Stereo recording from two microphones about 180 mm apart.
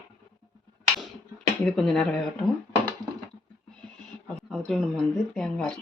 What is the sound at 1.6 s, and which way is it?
Speech, centre (ahead or behind).